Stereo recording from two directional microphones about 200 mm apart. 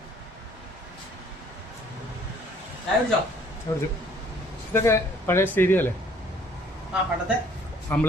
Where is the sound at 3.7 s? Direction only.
20° left (ahead or behind).